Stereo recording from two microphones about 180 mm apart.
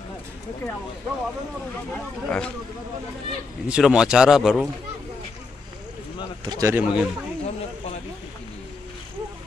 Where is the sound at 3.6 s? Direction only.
5° right (ahead or behind).